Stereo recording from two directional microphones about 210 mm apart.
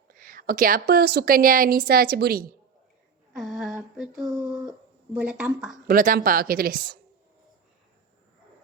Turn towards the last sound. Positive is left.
turn(degrees=-45)  # may be behind; listen again after turning